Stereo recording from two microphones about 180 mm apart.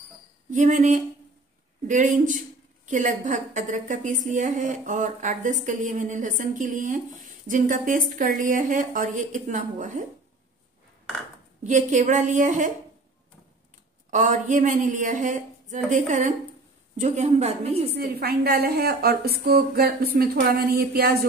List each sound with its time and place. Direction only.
0.5 s a woman's voice: 45° right (ahead or behind)
11.6 s a woman's voice: 45° right (ahead or behind)
14.1 s a woman's voice: 45° right (ahead or behind)
17.9 s a woman's voice: 60° right (ahead or behind)